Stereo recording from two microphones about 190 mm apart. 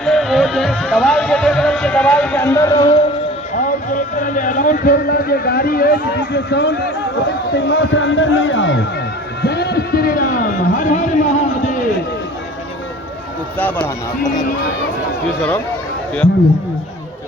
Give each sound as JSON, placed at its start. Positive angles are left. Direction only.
{"t": 0.0, "sound": "speech", "side_deg": 0}
{"t": 3.5, "sound": "speech", "side_deg": 45}
{"t": 9.4, "sound": "a sound", "side_deg": 60}
{"t": 13.6, "sound": "speech", "side_deg": 10}
{"t": 14.3, "sound": "speech", "side_deg": 40}